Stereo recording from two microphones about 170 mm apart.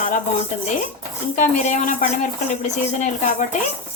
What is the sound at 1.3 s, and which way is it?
Speech, 45° left (ahead or behind).